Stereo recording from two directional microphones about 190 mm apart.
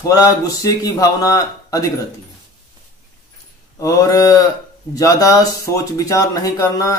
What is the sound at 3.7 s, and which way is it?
Speech, 15° left (ahead or behind).